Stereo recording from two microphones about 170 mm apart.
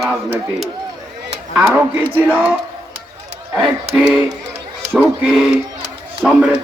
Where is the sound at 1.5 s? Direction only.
5° right (ahead or behind).